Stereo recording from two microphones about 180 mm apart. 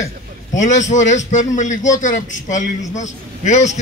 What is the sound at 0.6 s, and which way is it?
A man's voice, 40° left (ahead or behind).